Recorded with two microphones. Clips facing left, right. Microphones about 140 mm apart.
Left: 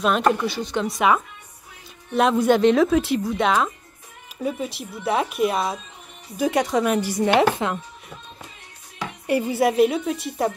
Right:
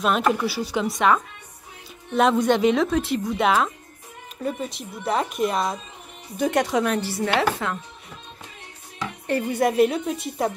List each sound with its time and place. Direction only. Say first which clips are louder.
0.0 s speech: left 1 dB; centre (ahead or behind)
6.9 s speech: left 4 dB; 15° left (ahead or behind)
9.3 s speech: left 2 dB; 10° left (ahead or behind)